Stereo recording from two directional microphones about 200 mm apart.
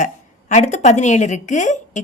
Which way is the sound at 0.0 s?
35° left (ahead or behind).